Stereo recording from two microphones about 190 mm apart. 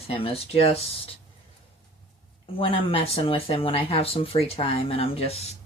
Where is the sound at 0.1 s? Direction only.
30° left (ahead or behind).